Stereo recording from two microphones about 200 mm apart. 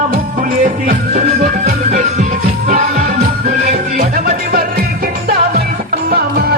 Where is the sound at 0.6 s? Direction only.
40° right (ahead or behind).